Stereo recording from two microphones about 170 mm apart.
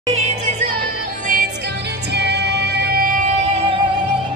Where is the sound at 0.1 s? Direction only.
40° right (ahead or behind).